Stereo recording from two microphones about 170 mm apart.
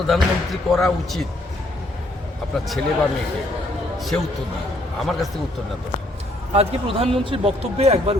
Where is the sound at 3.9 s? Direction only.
Centre (ahead or behind).